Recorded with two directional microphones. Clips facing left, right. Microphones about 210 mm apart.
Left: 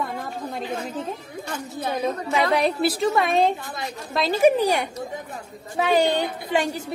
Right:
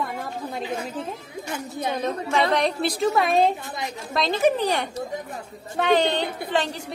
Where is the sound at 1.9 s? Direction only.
10° left (ahead or behind).